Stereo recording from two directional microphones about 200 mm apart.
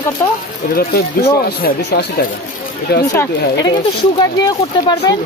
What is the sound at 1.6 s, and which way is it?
Speech, 50° left (ahead or behind).